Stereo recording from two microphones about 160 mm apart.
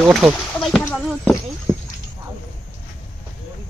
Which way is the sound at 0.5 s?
5° left (ahead or behind).